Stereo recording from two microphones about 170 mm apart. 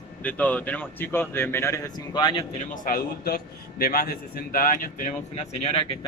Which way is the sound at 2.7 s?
55° left (ahead or behind).